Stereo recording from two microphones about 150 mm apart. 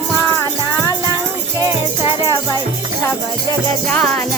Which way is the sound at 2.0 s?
30° left (ahead or behind).